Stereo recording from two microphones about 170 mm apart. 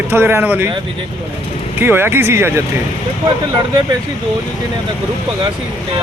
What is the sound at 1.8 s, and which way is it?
Speech, 15° right (ahead or behind).